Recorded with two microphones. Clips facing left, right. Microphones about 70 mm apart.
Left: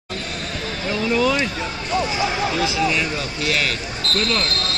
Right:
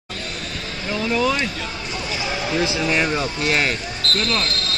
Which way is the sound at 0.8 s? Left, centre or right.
Centre.